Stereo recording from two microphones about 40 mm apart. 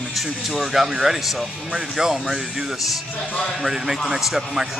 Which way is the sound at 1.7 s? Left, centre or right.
Centre.